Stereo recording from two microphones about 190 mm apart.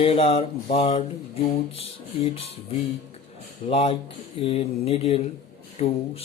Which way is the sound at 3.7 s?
30° left (ahead or behind).